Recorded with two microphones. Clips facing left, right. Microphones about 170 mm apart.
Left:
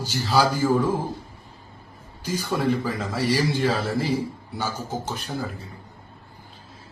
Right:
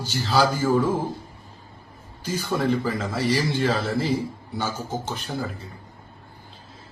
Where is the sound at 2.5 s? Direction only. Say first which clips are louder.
Right 1 dB; 5° left (ahead or behind).